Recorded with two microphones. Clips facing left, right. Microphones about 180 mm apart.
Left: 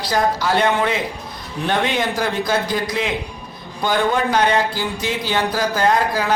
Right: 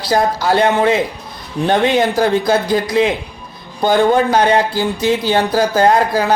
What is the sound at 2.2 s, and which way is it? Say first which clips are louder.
Speech: right 6 dB; 30° right (ahead or behind).